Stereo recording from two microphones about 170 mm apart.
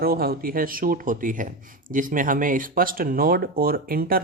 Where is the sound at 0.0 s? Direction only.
60° right (ahead or behind).